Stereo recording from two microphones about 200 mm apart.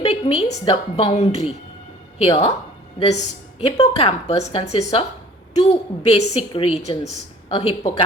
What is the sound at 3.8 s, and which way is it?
Speech, 25° left (ahead or behind).